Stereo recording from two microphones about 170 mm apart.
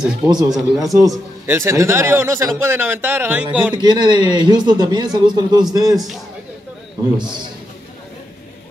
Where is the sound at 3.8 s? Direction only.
25° right (ahead or behind).